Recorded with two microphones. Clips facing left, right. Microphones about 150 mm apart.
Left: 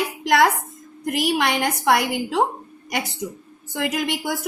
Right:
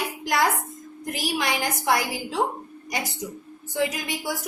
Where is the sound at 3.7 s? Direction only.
70° left (ahead or behind).